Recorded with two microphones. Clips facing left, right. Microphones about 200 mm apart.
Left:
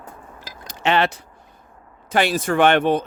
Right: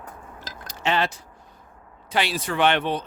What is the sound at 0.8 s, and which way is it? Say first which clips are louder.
Speech: left 5 dB; 65° left (ahead or behind).